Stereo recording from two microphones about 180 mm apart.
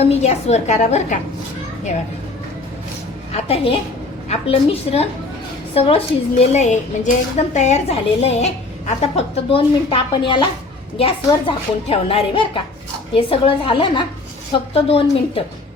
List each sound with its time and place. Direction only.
0.0 s a woman's voice: 35° left (ahead or behind)
3.3 s a woman's voice: 30° left (ahead or behind)